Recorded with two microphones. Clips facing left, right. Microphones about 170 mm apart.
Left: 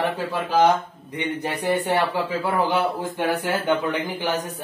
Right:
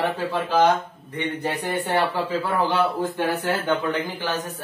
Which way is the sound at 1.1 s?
15° left (ahead or behind).